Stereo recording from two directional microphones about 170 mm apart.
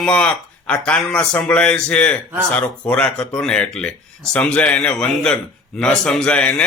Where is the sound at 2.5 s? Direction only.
5° left (ahead or behind).